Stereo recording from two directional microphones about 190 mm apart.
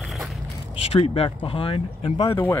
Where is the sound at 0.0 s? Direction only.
Centre (ahead or behind).